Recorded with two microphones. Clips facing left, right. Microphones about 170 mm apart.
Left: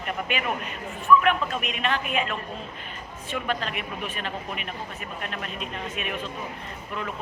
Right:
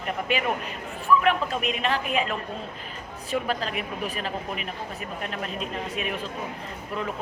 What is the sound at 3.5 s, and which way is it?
A woman's voice, 35° right (ahead or behind).